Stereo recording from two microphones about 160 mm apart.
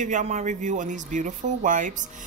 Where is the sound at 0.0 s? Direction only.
50° right (ahead or behind).